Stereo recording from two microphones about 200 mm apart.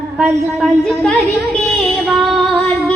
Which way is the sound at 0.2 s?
Centre (ahead or behind).